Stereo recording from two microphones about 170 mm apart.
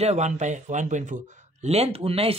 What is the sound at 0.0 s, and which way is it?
Speech, 40° right (ahead or behind).